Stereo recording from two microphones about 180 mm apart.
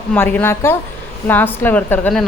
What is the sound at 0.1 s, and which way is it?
A woman's voice, 10° left (ahead or behind).